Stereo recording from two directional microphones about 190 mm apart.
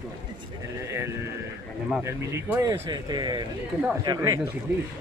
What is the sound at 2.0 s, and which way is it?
Speech, 15° right (ahead or behind).